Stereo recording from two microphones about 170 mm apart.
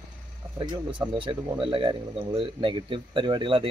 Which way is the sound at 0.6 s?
25° right (ahead or behind).